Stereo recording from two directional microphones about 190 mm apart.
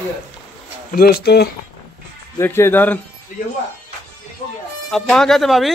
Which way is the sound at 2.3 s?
15° left (ahead or behind).